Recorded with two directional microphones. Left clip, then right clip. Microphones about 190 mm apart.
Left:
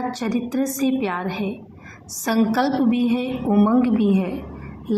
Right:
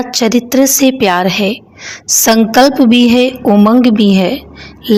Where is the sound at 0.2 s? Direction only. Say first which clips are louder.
Right 14 dB; 40° right (ahead or behind).